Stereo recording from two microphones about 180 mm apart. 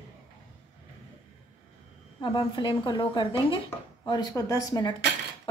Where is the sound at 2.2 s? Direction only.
25° left (ahead or behind).